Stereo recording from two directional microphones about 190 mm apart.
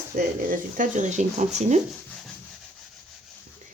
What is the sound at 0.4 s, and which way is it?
Speech, 45° right (ahead or behind).